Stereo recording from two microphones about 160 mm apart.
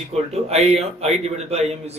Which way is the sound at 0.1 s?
40° right (ahead or behind).